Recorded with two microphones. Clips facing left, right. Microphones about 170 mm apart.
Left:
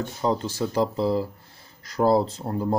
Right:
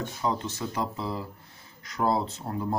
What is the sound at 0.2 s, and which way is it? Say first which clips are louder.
Speech: left 6 dB; 35° left (ahead or behind).